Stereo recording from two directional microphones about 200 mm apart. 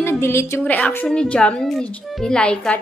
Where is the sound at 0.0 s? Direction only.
15° left (ahead or behind).